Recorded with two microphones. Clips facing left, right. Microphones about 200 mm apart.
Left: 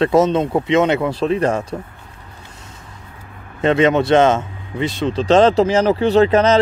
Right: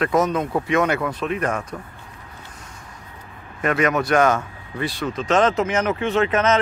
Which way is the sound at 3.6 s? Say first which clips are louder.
Left 6 dB; 25° left (ahead or behind).